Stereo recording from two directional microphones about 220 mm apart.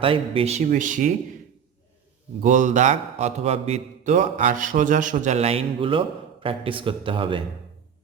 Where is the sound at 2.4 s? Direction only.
35° right (ahead or behind).